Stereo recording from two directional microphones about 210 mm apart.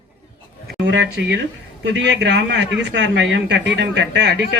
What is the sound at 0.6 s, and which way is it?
Speech, 55° right (ahead or behind).